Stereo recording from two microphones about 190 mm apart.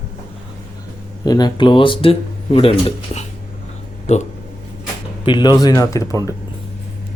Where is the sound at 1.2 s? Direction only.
20° left (ahead or behind); by 4.2 s 35° left (ahead or behind).